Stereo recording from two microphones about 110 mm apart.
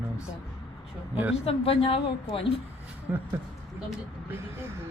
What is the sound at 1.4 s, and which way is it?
Speech, 60° left (ahead or behind).